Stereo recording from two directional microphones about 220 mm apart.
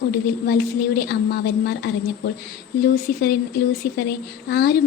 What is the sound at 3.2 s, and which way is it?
A woman's voice, 45° left (ahead or behind).